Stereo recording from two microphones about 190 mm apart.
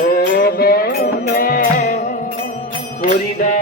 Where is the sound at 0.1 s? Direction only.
55° left (ahead or behind).